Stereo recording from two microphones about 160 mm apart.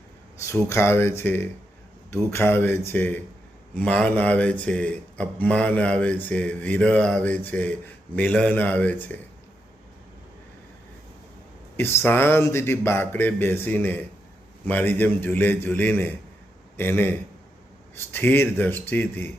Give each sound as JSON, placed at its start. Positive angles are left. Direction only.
{"t": 0.4, "sound": "speech", "side_deg": 15}
{"t": 11.8, "sound": "a man's voice", "side_deg": 15}